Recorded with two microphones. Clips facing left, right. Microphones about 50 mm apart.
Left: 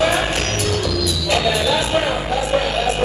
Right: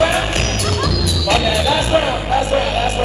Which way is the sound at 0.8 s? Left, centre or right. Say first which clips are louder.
Right 2 dB; right.